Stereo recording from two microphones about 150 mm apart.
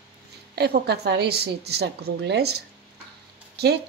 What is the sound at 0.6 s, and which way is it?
A woman's voice, 90° right.